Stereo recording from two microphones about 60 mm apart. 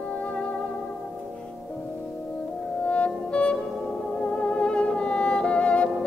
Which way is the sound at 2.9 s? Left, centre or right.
Left.